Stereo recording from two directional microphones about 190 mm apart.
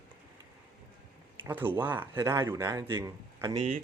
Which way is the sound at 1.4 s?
10° right (ahead or behind).